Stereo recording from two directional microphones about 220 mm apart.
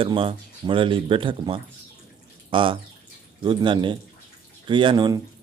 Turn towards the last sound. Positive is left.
turn(degrees=-20)  # may be behind; listen again after turning